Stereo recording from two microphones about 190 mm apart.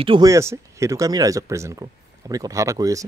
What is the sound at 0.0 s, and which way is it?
Speech, 25° right (ahead or behind).